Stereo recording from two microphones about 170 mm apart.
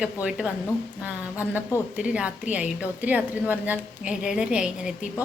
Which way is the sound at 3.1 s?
10° right (ahead or behind).